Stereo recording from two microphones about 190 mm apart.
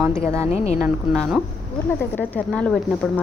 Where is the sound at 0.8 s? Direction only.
Centre (ahead or behind).